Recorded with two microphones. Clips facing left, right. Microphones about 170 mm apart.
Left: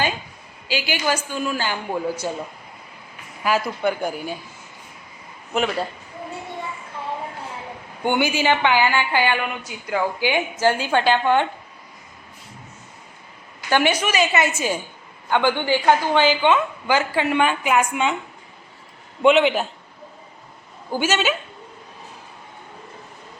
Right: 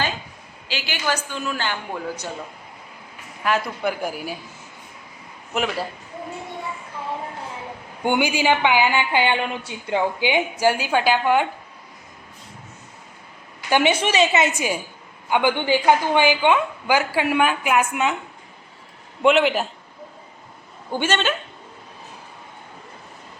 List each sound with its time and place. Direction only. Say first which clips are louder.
0.7 s a man's voice: left 3 dB; 10° left (ahead or behind)
3.4 s a woman's voice: left 2 dB; centre (ahead or behind)
5.5 s a woman's voice: left 2 dB; centre (ahead or behind)
8.0 s a woman's voice: even; 15° right (ahead or behind)
13.7 s a woman's voice: right 1 dB; 15° right (ahead or behind)
13.9 s a woman's voice: right 1 dB; 25° right (ahead or behind); by 18.2 s 5° right (ahead or behind)
19.2 s a woman's voice: left 1 dB; centre (ahead or behind)
20.9 s a man's voice: left 1 dB; 5° left (ahead or behind)